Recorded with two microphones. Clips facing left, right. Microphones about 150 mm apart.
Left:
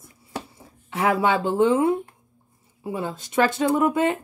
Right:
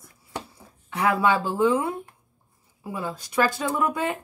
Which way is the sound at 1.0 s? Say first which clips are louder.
Left 1 dB; 25° left (ahead or behind).